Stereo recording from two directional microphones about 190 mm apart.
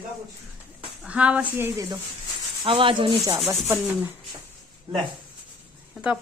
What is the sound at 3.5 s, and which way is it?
Speech, 10° right (ahead or behind).